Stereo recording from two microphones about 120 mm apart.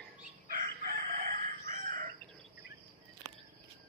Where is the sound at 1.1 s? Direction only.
90° right.